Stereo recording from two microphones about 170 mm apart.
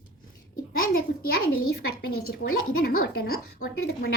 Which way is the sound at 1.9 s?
60° left (ahead or behind).